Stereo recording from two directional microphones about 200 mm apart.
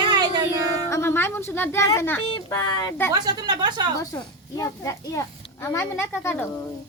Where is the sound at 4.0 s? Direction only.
15° left (ahead or behind).